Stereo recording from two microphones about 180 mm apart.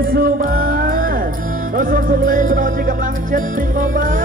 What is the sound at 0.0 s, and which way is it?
Music, 55° right (ahead or behind).